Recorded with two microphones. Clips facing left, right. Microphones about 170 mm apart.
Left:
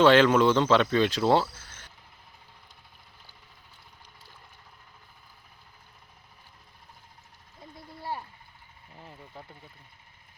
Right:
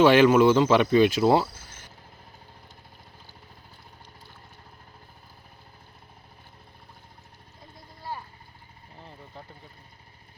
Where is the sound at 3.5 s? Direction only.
40° right (ahead or behind).